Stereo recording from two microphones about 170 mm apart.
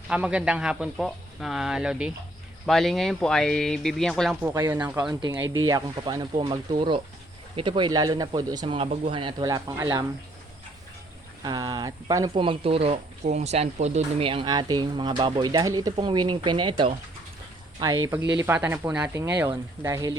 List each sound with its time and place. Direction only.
0.1 s a man's voice: 5° right (ahead or behind)
4.4 s speech: 15° right (ahead or behind)
11.4 s speech: 25° right (ahead or behind)
12.3 s speech: 30° right (ahead or behind)
18.3 s speech: 10° right (ahead or behind)